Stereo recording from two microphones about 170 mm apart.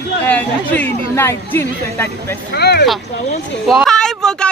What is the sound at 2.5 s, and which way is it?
Speech, 70° left (ahead or behind).